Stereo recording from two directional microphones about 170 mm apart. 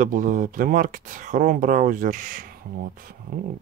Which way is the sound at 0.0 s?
50° right (ahead or behind).